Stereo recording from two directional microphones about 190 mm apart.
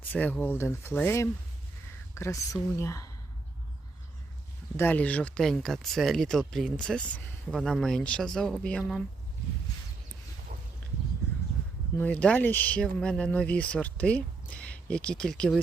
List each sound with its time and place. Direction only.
0.0 s speech: 10° left (ahead or behind)
4.8 s speech: 10° left (ahead or behind)
10.5 s a sound: 45° right (ahead or behind)
11.9 s speech: 10° left (ahead or behind)